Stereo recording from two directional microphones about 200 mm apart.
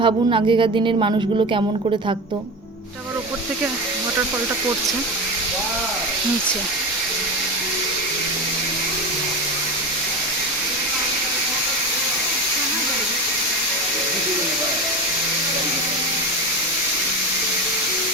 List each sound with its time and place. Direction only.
0.0 s speech: 25° right (ahead or behind)